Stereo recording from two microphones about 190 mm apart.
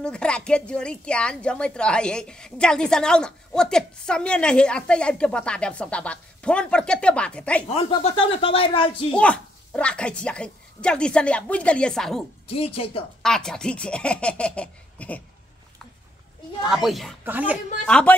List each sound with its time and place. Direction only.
0.0 s a woman's voice: 5° left (ahead or behind)
7.7 s speech: 30° left (ahead or behind)
9.1 s a woman's voice: 5° left (ahead or behind)
12.4 s speech: 30° left (ahead or behind)
13.2 s a woman's voice: 5° left (ahead or behind)
16.6 s a woman's voice: centre (ahead or behind)
17.8 s a woman's voice: 5° left (ahead or behind)